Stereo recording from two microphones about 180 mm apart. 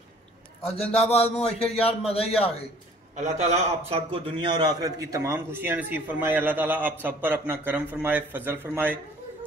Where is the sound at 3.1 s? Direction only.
40° right (ahead or behind).